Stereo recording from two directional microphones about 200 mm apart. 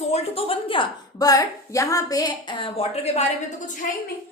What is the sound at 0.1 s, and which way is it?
A woman's voice, 30° left (ahead or behind).